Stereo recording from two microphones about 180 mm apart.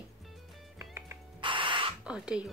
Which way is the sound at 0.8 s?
15° right (ahead or behind).